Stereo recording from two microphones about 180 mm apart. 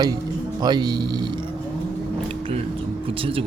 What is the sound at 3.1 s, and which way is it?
Speech, 30° right (ahead or behind).